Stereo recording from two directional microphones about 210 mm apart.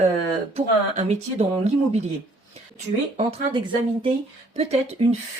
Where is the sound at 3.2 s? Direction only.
25° right (ahead or behind).